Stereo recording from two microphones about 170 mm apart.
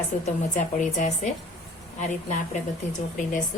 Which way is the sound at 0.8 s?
45° left (ahead or behind).